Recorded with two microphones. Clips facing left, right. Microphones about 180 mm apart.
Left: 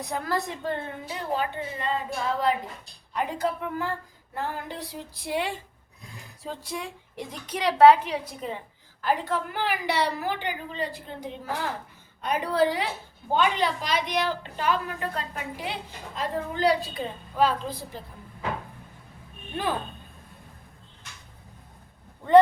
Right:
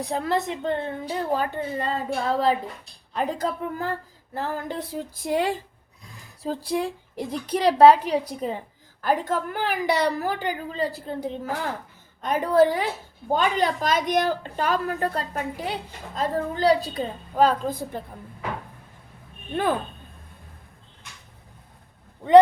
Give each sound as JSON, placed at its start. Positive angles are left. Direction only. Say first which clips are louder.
{"t": 0.0, "sound": "a woman's voice", "louder": "right 4 dB", "side_deg": -25}
{"t": 1.1, "sound": "a woman's voice", "louder": "right 3 dB", "side_deg": -40}